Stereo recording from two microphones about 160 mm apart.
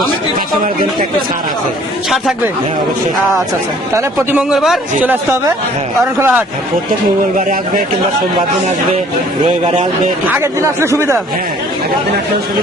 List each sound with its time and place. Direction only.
4.4 s a man's voice: 5° right (ahead or behind)
6.1 s speech: 15° right (ahead or behind)
7.3 s a man's voice: 60° right (ahead or behind)
10.2 s speech: 15° right (ahead or behind)